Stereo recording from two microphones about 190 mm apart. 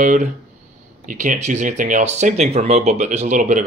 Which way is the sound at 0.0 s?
45° right (ahead or behind).